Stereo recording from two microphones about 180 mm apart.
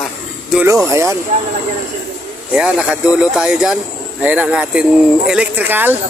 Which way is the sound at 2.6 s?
5° right (ahead or behind).